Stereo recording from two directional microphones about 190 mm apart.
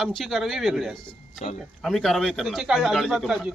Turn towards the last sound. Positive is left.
turn(degrees=0)  # may be behind; listen again after turning